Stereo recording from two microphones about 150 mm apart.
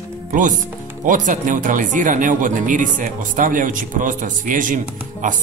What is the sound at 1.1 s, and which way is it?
Speech, 60° right (ahead or behind).